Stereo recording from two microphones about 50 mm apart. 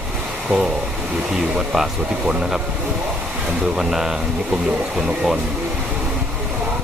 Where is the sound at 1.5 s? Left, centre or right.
Centre.